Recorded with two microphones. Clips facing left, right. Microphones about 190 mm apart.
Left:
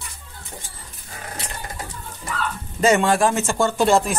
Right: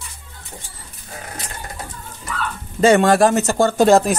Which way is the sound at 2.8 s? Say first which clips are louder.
Right 4 dB; 35° right (ahead or behind).